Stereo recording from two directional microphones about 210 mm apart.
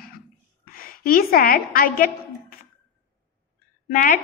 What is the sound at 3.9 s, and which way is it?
Speech, 40° left (ahead or behind).